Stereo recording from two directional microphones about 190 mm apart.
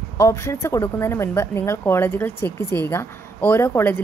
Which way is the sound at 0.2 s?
15° left (ahead or behind).